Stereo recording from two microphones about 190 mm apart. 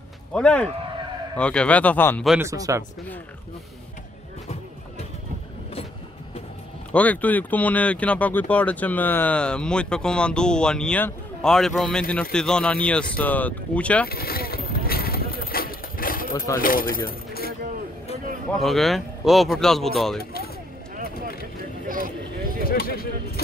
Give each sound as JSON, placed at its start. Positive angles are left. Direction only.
{"t": 0.3, "sound": "speech", "side_deg": 5}
{"t": 2.4, "sound": "speech", "side_deg": -15}
{"t": 6.9, "sound": "speech", "side_deg": 10}
{"t": 14.0, "sound": "vehicle", "side_deg": 55}
{"t": 16.3, "sound": "speech", "side_deg": 15}
{"t": 16.6, "sound": "speech", "side_deg": 50}
{"t": 18.5, "sound": "speech", "side_deg": 0}
{"t": 20.9, "sound": "a sound", "side_deg": -50}
{"t": 22.7, "sound": "a sound", "side_deg": 50}